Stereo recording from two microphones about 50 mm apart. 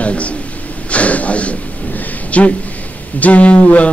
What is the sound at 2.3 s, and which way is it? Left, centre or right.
Speech, left.